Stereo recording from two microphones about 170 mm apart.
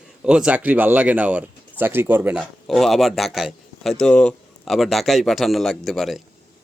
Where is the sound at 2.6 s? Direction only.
Centre (ahead or behind).